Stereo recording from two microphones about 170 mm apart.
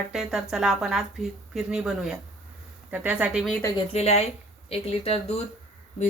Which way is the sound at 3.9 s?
40° left (ahead or behind).